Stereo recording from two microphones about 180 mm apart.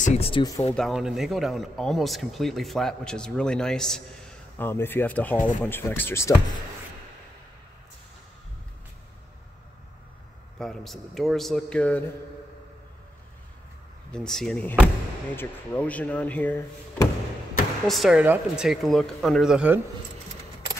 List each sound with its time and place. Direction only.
0.0 s speech: 35° left (ahead or behind)
0.7 s speech: centre (ahead or behind)
10.6 s speech: centre (ahead or behind)
14.1 s speech: 5° left (ahead or behind)
17.8 s speech: centre (ahead or behind)